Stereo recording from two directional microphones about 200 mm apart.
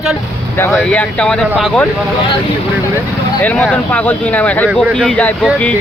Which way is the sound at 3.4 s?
5° left (ahead or behind).